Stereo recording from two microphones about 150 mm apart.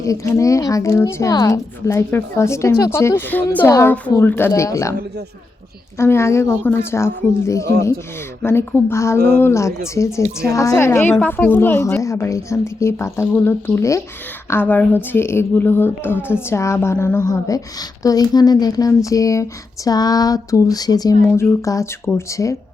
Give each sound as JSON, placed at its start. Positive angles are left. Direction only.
{"t": 0.0, "sound": "speech", "side_deg": 20}
{"t": 6.0, "sound": "a woman's voice", "side_deg": 20}